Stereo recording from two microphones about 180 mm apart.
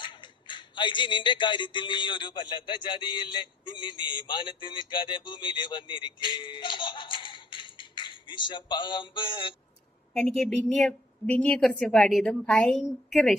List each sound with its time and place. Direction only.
0.0 s speech: 25° left (ahead or behind)
10.2 s a woman's voice: centre (ahead or behind)